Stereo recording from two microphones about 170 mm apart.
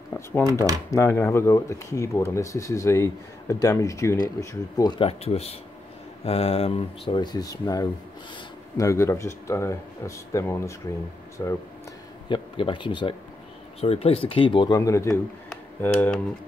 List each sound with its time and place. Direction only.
0.9 s speech: 15° left (ahead or behind)
14.8 s speech: 15° left (ahead or behind)